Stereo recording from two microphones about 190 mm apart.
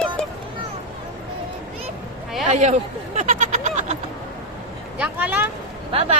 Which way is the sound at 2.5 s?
40° right (ahead or behind).